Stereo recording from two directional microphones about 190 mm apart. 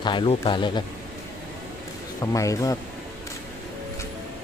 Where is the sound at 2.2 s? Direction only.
15° left (ahead or behind).